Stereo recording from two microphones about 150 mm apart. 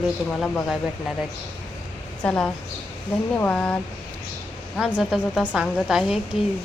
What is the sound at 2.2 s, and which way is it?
A woman's voice, 5° left (ahead or behind).